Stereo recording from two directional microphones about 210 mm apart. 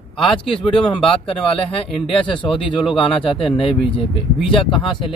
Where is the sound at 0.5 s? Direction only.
25° left (ahead or behind).